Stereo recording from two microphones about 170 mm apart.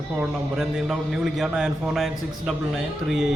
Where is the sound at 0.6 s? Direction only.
Centre (ahead or behind).